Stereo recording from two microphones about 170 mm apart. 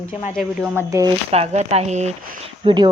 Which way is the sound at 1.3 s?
40° right (ahead or behind).